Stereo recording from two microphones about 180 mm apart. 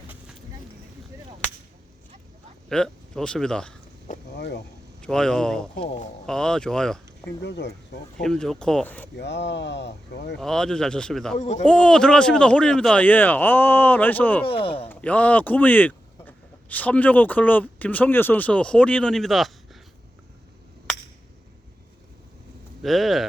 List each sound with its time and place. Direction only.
2.6 s speech: 5° left (ahead or behind)
4.4 s speech: 70° left (ahead or behind)
4.9 s speech: 5° left (ahead or behind)
5.8 s speech: 35° left (ahead or behind)
6.2 s a man's voice: 5° left (ahead or behind)
7.4 s speech: 75° left (ahead or behind)
8.2 s a man's voice: 5° left (ahead or behind)
9.1 s speech: 75° left (ahead or behind)
10.4 s a man's voice: 5° left (ahead or behind)
11.3 s speech: 40° left (ahead or behind)
11.6 s speech: 5° left (ahead or behind)
14.4 s speech: 30° left (ahead or behind)
14.8 s speech: 10° left (ahead or behind)
22.8 s a man's voice: centre (ahead or behind)